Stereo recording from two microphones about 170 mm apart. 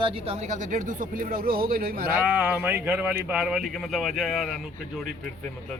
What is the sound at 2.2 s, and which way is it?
Speech, 10° right (ahead or behind).